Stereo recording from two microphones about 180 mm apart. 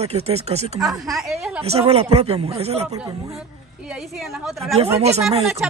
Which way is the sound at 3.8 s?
Centre (ahead or behind).